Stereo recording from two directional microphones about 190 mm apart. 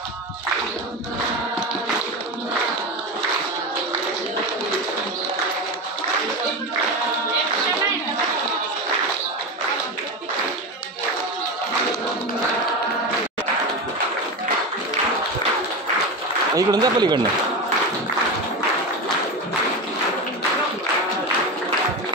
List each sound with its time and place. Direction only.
16.5 s a man's voice: 20° right (ahead or behind)